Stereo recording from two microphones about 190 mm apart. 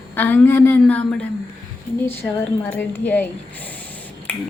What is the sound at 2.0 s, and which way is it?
Speech, 10° left (ahead or behind).